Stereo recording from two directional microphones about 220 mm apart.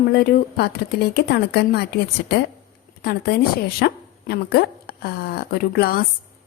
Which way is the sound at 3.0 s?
45° left (ahead or behind).